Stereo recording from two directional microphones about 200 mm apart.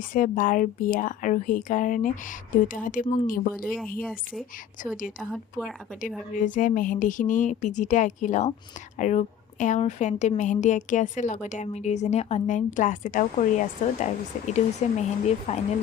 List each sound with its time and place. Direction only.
0.0 s a woman's voice: 45° left (ahead or behind)
3.5 s speech: centre (ahead or behind)
4.8 s a woman's voice: 40° left (ahead or behind)
5.3 s speech: centre (ahead or behind)
6.0 s a woman's voice: 40° left (ahead or behind)